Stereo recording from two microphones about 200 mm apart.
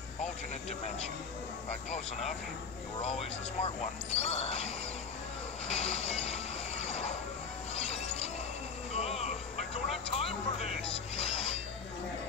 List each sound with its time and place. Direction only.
0.2 s a sound: 35° left (ahead or behind)
3.0 s speech: 30° left (ahead or behind)
5.7 s music: 30° left (ahead or behind)
7.7 s a sound: 30° left (ahead or behind)
8.9 s insect: 35° left (ahead or behind)
10.1 s speech: 30° left (ahead or behind)
11.1 s filing: 30° left (ahead or behind)